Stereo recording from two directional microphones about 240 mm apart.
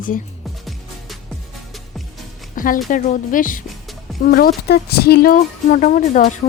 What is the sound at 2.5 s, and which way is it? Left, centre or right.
Music, left.